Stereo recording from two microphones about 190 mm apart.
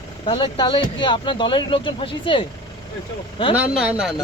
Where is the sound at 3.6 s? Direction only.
5° right (ahead or behind).